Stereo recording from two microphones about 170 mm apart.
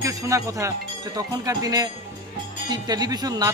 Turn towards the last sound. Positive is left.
turn(degrees=-25)  # may be behind; listen again after turning